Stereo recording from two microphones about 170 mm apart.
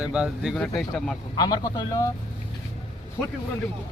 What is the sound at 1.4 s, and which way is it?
Speech, 25° left (ahead or behind).